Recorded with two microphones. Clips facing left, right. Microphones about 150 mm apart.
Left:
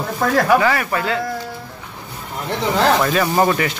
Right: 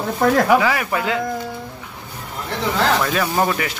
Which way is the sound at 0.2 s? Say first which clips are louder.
Even; 15° right (ahead or behind).